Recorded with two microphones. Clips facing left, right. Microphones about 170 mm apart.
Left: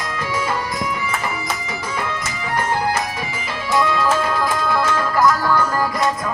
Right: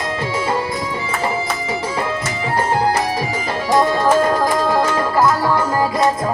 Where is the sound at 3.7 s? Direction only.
40° right (ahead or behind); by 5.8 s 25° right (ahead or behind).